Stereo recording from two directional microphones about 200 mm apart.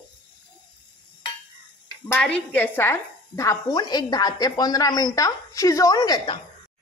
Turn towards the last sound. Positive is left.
turn(degrees=20)  # may be behind; listen again after turning